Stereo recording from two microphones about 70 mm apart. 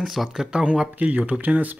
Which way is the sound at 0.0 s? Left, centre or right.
Centre.